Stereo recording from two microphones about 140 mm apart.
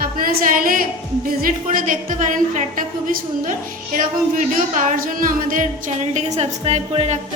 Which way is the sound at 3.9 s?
70° right (ahead or behind).